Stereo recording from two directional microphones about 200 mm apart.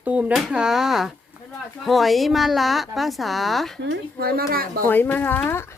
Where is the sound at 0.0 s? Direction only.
5° right (ahead or behind).